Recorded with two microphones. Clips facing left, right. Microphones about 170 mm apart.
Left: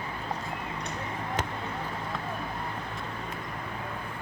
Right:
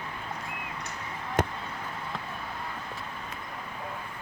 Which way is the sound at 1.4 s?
50° right (ahead or behind).